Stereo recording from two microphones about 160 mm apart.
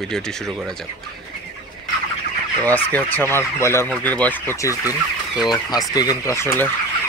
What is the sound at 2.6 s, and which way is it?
Speech, 10° left (ahead or behind).